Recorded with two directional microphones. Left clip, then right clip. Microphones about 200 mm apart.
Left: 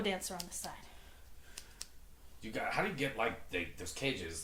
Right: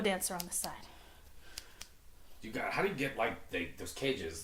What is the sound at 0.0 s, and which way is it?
Speech, 40° right (ahead or behind).